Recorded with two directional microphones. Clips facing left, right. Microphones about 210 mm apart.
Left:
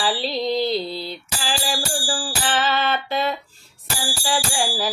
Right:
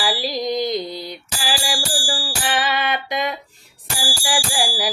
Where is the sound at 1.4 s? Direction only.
15° right (ahead or behind).